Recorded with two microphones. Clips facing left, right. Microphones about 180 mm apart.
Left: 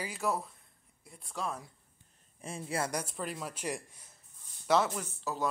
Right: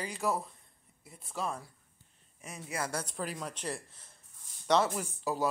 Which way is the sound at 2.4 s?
30° left (ahead or behind).